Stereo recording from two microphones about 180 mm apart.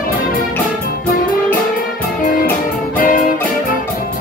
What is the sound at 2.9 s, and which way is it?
Music, 50° left (ahead or behind).